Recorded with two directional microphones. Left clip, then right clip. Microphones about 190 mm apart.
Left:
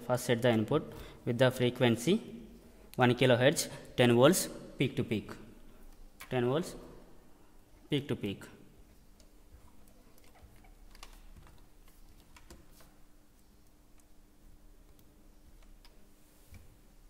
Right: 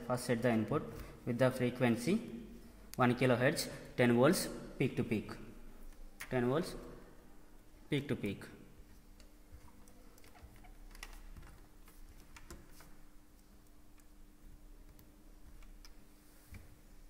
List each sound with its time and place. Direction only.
0.0 s a man's voice: 55° left (ahead or behind)
6.3 s a man's voice: 35° left (ahead or behind)